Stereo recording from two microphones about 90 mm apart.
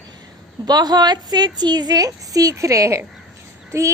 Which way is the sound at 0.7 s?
50° right (ahead or behind).